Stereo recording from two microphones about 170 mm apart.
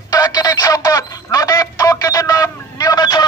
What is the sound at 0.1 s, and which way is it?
Speech, 20° left (ahead or behind).